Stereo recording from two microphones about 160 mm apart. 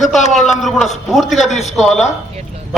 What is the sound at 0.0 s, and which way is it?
A man's voice, centre (ahead or behind).